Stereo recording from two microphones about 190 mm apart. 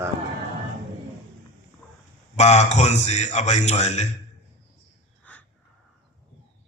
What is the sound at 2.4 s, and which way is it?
A man's voice, 35° left (ahead or behind).